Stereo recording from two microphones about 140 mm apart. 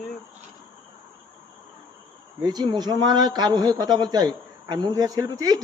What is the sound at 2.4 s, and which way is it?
A man's voice, 30° right (ahead or behind).